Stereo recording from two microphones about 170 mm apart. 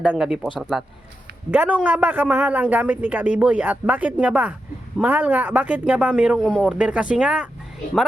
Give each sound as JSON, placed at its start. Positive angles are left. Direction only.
{"t": 0.0, "sound": "a man's voice", "side_deg": -5}